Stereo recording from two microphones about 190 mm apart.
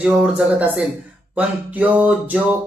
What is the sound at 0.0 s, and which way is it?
Speech, 5° right (ahead or behind).